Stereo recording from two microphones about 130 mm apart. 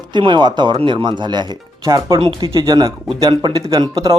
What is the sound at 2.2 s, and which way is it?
Speech, 45° right (ahead or behind).